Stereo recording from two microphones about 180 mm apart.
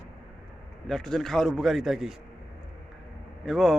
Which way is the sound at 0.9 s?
5° left (ahead or behind).